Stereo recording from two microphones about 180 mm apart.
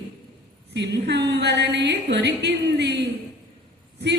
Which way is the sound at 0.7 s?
70° right (ahead or behind).